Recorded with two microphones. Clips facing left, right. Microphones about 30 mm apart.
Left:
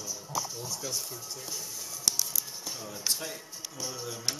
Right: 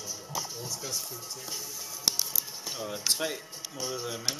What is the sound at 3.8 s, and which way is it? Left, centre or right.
Speech, centre.